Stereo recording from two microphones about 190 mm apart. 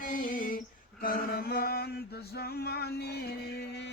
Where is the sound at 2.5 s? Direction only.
60° left (ahead or behind).